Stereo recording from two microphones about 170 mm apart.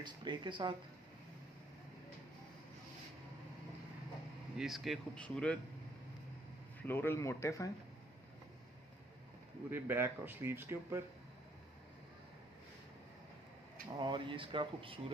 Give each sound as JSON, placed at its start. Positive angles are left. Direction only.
{"t": 0.0, "sound": "speech", "side_deg": -25}
{"t": 4.6, "sound": "speech", "side_deg": 0}
{"t": 6.9, "sound": "speech", "side_deg": 15}
{"t": 9.7, "sound": "speech", "side_deg": -10}
{"t": 13.9, "sound": "speech", "side_deg": -30}